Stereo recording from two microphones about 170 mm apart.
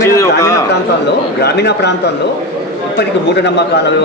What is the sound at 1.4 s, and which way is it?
Speech, 80° left.